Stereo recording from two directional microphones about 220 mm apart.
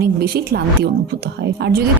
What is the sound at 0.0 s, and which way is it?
A woman's voice, 45° right (ahead or behind).